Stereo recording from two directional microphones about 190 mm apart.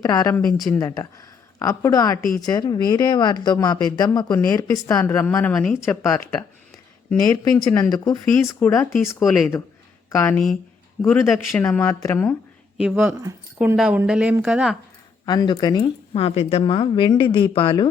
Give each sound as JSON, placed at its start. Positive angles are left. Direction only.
{"t": 0.0, "sound": "speech", "side_deg": 20}
{"t": 10.3, "sound": "a woman's voice", "side_deg": 0}
{"t": 11.0, "sound": "speech", "side_deg": 15}
{"t": 12.7, "sound": "a woman's voice", "side_deg": 0}
{"t": 15.3, "sound": "speech", "side_deg": 25}